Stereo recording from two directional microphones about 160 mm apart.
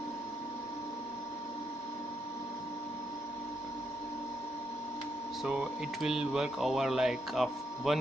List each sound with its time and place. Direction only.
5.4 s speech: 5° right (ahead or behind)